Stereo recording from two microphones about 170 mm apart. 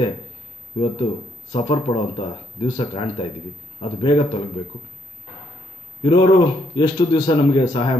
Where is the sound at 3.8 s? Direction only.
30° left (ahead or behind).